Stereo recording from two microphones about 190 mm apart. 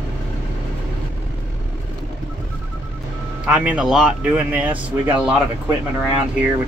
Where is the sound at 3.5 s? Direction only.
5° right (ahead or behind).